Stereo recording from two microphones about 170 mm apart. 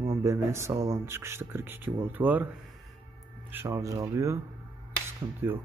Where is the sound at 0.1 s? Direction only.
15° right (ahead or behind).